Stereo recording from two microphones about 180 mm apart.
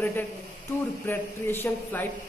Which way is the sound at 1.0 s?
10° left (ahead or behind).